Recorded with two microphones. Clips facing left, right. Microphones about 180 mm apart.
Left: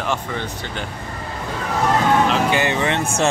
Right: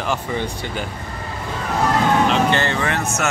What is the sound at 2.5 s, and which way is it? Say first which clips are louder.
Speech: left 1 dB; 15° left (ahead or behind).